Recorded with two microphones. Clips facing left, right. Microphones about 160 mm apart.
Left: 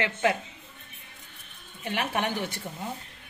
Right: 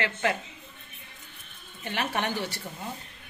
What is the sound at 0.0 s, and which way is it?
Speech, 20° left (ahead or behind).